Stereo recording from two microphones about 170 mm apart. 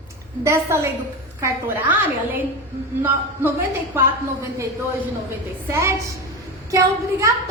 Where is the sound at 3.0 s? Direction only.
10° right (ahead or behind).